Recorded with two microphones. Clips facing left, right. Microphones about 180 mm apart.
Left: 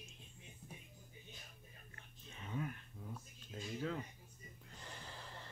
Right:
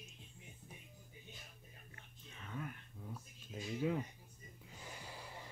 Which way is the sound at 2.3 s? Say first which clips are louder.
Left 3 dB; 20° left (ahead or behind).